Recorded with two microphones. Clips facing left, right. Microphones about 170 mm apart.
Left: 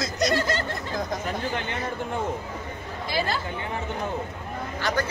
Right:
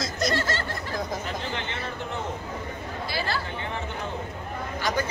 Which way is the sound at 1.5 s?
45° left (ahead or behind).